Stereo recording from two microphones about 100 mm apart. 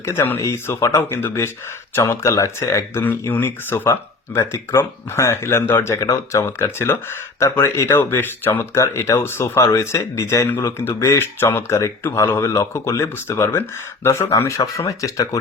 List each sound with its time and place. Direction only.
0.0 s speech: 25° left (ahead or behind)
3.0 s speech: 20° left (ahead or behind); by 15.4 s 35° left (ahead or behind)